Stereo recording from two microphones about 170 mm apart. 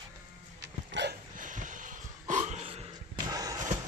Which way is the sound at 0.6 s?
90° right.